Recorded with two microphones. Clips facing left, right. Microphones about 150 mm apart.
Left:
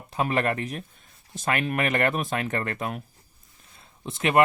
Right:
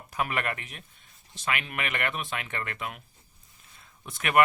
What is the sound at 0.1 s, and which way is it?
Speech, 30° left (ahead or behind).